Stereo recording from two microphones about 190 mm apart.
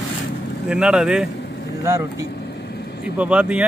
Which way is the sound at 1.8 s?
15° right (ahead or behind).